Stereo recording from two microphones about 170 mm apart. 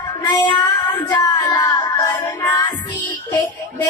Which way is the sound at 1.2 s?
25° left (ahead or behind).